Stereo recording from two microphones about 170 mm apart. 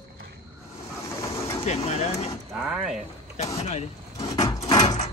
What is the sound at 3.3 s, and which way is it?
Speech, 40° left (ahead or behind).